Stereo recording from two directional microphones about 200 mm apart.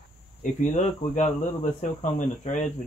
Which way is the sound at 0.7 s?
35° left (ahead or behind).